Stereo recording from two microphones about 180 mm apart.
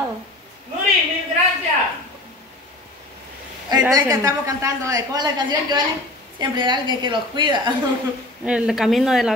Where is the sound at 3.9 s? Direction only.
20° right (ahead or behind).